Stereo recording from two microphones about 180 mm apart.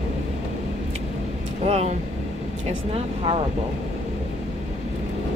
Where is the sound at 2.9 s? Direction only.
30° right (ahead or behind).